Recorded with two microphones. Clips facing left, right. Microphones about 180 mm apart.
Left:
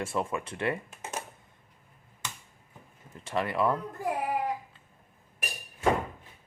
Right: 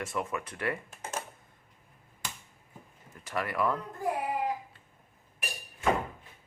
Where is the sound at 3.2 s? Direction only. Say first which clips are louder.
Left 3 dB; 25° left (ahead or behind).